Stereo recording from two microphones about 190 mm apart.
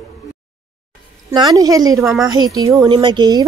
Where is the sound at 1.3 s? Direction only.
20° right (ahead or behind).